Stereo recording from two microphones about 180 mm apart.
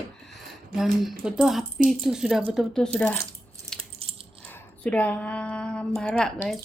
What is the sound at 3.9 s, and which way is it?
Coin, 30° right (ahead or behind).